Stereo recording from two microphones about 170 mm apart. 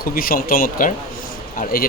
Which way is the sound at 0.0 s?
60° left (ahead or behind).